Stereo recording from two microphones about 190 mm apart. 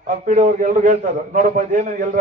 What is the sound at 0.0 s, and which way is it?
A man's voice, 40° right (ahead or behind).